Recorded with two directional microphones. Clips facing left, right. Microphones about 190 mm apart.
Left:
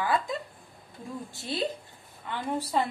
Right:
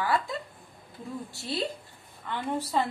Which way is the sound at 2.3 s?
15° left (ahead or behind).